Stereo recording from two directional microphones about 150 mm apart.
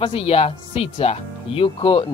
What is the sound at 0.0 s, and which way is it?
Speech, 40° left (ahead or behind).